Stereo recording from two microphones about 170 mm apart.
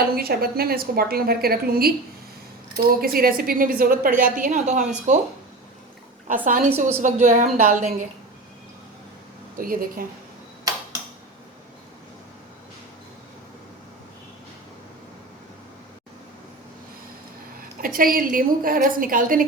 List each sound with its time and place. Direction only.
0.2 s a woman's voice: 65° right (ahead or behind); by 5.2 s 45° right (ahead or behind)
6.2 s a woman's voice: 50° right (ahead or behind)
9.6 s speech: 55° right (ahead or behind)
17.7 s speech: 55° right (ahead or behind)